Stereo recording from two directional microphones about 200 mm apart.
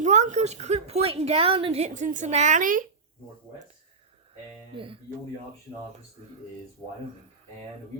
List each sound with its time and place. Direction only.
0.0 s a woman's voice: 35° right (ahead or behind)
4.7 s speech: 25° right (ahead or behind)